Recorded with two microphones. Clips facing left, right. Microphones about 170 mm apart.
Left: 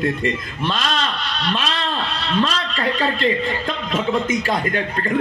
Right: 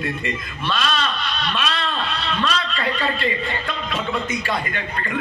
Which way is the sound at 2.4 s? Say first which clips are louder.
Left 5 dB; 35° left (ahead or behind).